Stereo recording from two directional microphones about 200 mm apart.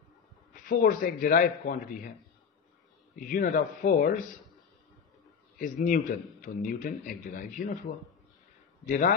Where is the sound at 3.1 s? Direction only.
45° left (ahead or behind).